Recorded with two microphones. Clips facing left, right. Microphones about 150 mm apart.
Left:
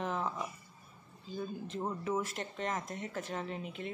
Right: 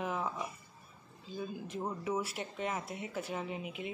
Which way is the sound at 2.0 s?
10° right (ahead or behind).